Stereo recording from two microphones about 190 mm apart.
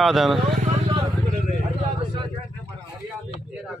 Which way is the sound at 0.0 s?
Centre (ahead or behind).